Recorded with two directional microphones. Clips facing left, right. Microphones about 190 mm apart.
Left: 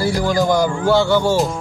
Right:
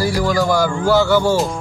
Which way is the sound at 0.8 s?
10° right (ahead or behind).